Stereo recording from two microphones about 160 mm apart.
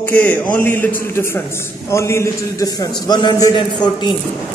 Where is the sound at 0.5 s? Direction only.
10° left (ahead or behind); by 4.1 s 30° left (ahead or behind).